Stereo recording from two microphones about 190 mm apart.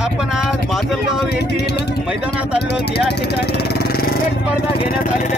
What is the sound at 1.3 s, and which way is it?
Speech, 60° left (ahead or behind).